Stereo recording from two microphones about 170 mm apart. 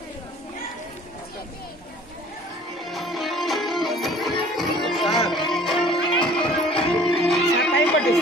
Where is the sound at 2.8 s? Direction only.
Centre (ahead or behind).